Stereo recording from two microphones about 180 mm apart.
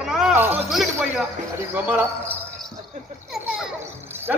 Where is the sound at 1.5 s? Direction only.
10° right (ahead or behind).